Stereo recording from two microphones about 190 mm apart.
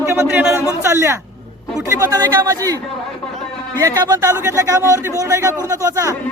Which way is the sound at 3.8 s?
20° right (ahead or behind).